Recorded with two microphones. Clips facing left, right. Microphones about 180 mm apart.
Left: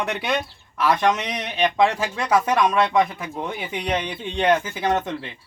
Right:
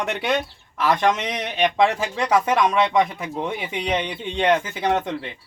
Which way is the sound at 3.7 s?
Centre (ahead or behind).